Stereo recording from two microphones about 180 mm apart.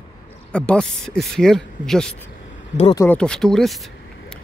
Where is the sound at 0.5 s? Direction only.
5° left (ahead or behind).